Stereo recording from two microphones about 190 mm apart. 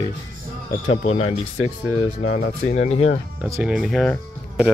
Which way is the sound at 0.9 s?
35° left (ahead or behind).